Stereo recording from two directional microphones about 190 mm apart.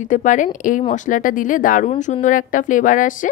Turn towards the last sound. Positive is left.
turn(degrees=45)  # may be behind; listen again after turning